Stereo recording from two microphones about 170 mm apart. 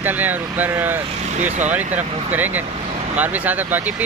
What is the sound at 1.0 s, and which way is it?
Speech, 40° right (ahead or behind).